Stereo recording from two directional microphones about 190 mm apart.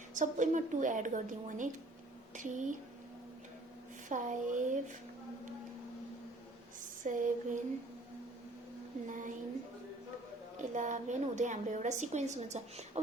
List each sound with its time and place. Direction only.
0.1 s a woman's voice: 40° right (ahead or behind)
4.1 s a woman's voice: 40° right (ahead or behind)
7.0 s a woman's voice: 45° right (ahead or behind)
9.0 s a sound: 45° right (ahead or behind)
10.6 s a woman's voice: 40° right (ahead or behind)